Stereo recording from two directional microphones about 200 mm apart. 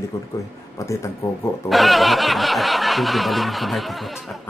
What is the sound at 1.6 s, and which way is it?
Snicker, centre (ahead or behind).